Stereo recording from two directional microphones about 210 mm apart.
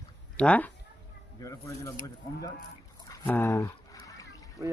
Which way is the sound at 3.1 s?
10° left (ahead or behind).